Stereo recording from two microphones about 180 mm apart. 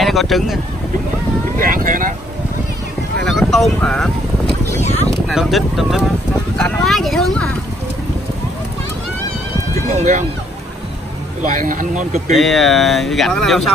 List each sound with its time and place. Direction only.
0.0 s speech: centre (ahead or behind)
1.6 s speech: 50° right (ahead or behind)
3.2 s speech: centre (ahead or behind)
5.3 s speech: centre (ahead or behind)
9.9 s speech: 45° right (ahead or behind)
11.4 s speech: 50° right (ahead or behind)
12.4 s speech: centre (ahead or behind)